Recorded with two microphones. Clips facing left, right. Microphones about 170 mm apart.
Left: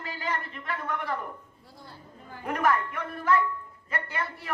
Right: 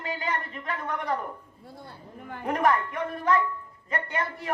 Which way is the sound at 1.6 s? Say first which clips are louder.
Right 6 dB; 55° right (ahead or behind).